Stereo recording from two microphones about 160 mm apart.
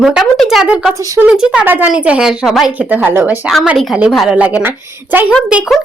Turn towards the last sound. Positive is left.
turn(degrees=-5)  # may be behind; listen again after turning